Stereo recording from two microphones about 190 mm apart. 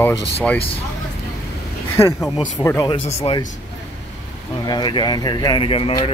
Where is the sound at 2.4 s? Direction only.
20° left (ahead or behind).